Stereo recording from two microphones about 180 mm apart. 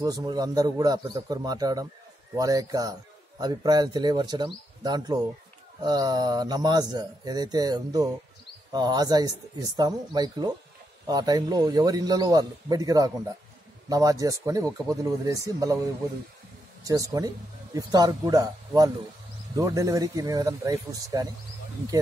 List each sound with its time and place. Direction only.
0.0 s speech: 20° right (ahead or behind)
16.8 s speech: 20° right (ahead or behind)